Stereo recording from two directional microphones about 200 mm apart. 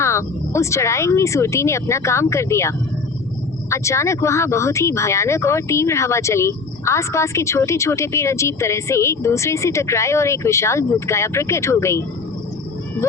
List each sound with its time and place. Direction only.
0.0 s speech: 15° left (ahead or behind)